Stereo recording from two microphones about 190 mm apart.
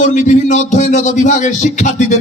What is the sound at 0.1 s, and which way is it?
A man's voice, 40° left (ahead or behind).